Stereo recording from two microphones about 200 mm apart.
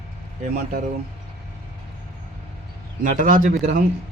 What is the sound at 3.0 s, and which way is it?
Speech, 40° right (ahead or behind).